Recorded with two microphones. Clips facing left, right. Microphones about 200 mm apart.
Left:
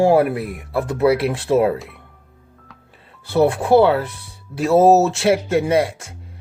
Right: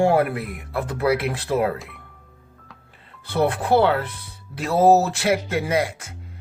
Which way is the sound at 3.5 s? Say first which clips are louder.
Left 4 dB; 25° left (ahead or behind).